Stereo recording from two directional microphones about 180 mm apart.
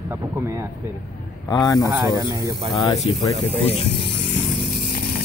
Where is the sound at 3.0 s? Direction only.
30° left (ahead or behind).